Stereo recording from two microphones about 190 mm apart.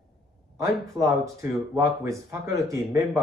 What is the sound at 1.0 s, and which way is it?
Speech, 15° right (ahead or behind).